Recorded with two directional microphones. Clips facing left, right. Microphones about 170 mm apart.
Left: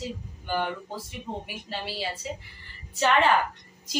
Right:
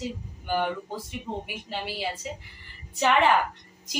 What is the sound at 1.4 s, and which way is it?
Speech, 15° right (ahead or behind).